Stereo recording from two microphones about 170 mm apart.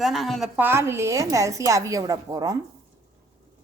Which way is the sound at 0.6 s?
15° right (ahead or behind).